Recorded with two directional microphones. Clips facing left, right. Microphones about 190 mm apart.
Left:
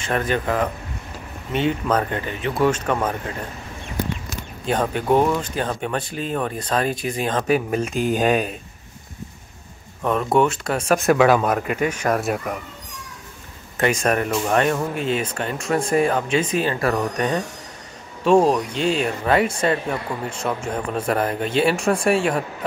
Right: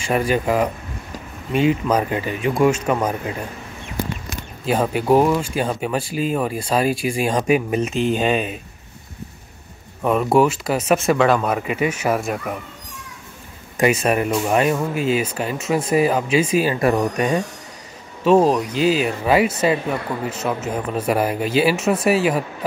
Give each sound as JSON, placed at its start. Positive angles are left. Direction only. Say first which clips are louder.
{"t": 0.0, "sound": "speech", "louder": "right 3 dB", "side_deg": -10}
{"t": 4.6, "sound": "speech", "louder": "right 3 dB", "side_deg": -5}
{"t": 10.0, "sound": "speech", "louder": "right 2 dB", "side_deg": -5}
{"t": 13.7, "sound": "speech", "louder": "right 2 dB", "side_deg": -10}
{"t": 18.2, "sound": "speech", "louder": "right 1 dB", "side_deg": 0}